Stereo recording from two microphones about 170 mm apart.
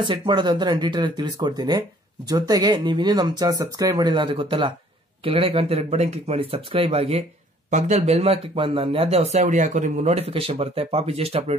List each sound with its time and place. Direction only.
0.0 s speech: 30° right (ahead or behind)